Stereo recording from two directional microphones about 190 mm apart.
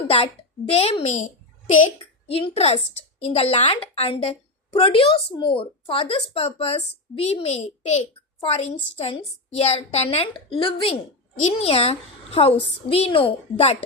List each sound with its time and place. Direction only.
0.7 s a woman's voice: 35° left (ahead or behind)
1.0 s a sound: 40° left (ahead or behind)
2.2 s a woman's voice: 30° left (ahead or behind)